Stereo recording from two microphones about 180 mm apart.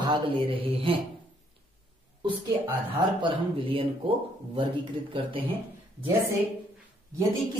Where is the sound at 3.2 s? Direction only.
30° right (ahead or behind).